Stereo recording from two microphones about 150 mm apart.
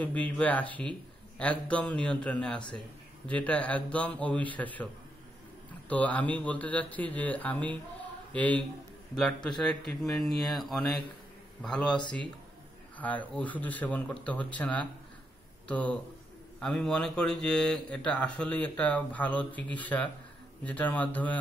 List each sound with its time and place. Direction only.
0.0 s speech: 10° left (ahead or behind)
5.9 s a man's voice: 10° left (ahead or behind)